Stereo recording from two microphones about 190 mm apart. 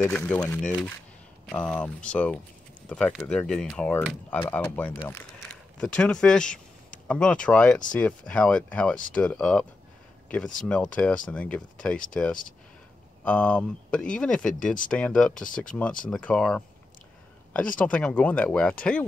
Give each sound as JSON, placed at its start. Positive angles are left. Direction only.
{"t": 0.0, "sound": "speech", "side_deg": 5}
{"t": 13.2, "sound": "speech", "side_deg": 5}
{"t": 17.7, "sound": "speech", "side_deg": 5}